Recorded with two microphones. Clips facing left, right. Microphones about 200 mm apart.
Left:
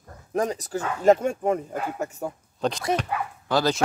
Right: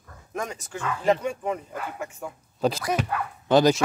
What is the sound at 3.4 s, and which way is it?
Speech, 20° right (ahead or behind).